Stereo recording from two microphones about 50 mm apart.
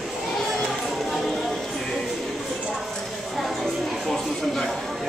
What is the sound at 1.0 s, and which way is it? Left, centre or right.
Music, centre.